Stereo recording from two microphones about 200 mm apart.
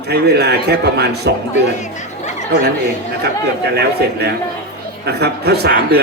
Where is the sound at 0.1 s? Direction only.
55° right (ahead or behind).